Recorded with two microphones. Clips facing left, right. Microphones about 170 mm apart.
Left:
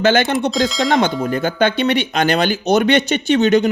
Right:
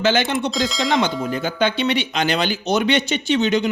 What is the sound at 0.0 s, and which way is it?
Speech, 55° left (ahead or behind).